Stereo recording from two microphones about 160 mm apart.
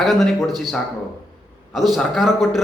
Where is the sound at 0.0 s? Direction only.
Centre (ahead or behind).